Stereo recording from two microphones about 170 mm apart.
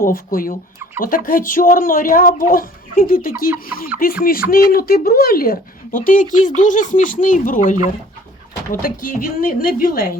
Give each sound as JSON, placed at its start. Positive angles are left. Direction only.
{"t": 0.0, "sound": "speech", "side_deg": 55}